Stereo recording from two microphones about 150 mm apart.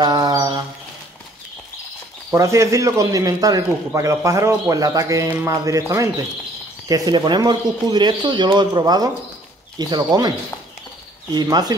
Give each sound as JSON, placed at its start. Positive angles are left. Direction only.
{"t": 0.0, "sound": "a sound", "side_deg": -25}
{"t": 2.3, "sound": "speech", "side_deg": -20}
{"t": 11.3, "sound": "speech", "side_deg": -25}